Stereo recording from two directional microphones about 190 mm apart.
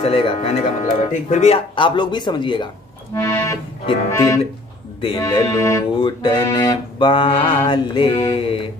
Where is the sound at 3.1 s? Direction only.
15° left (ahead or behind).